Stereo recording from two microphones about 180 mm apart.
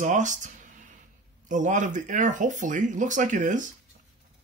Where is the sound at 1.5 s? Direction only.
45° right (ahead or behind).